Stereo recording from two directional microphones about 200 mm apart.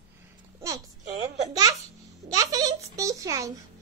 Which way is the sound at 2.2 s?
20° right (ahead or behind).